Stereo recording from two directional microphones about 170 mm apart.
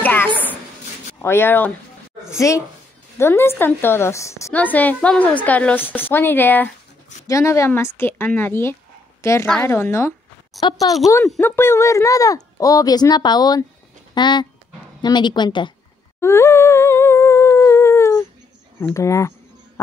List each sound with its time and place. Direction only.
0.0 s a sound: 10° left (ahead or behind)
1.2 s a woman's voice: 15° left (ahead or behind)
11.2 s speech: 10° left (ahead or behind); by 15.7 s 25° left (ahead or behind)
16.2 s humming: 15° left (ahead or behind)
18.8 s a woman's voice: 15° left (ahead or behind)